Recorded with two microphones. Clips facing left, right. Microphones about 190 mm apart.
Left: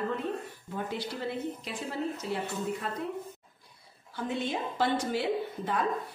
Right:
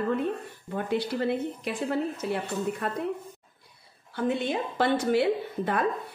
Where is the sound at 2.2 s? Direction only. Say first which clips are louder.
Right 4 dB; 60° right (ahead or behind).